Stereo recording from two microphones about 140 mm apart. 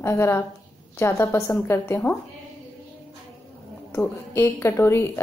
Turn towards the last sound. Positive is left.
turn(degrees=20)  # may be behind; listen again after turning